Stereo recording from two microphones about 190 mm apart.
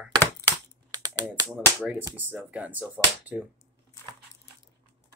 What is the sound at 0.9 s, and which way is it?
Typing, 20° right (ahead or behind).